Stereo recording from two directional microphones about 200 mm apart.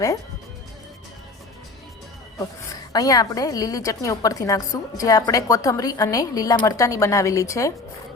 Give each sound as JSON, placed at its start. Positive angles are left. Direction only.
{"t": 2.9, "sound": "a woman's voice", "side_deg": 20}